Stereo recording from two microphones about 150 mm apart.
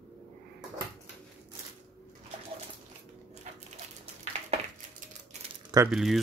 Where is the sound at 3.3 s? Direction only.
50° right (ahead or behind).